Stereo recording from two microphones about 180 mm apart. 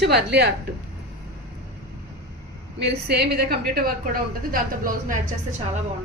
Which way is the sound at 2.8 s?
65° right (ahead or behind).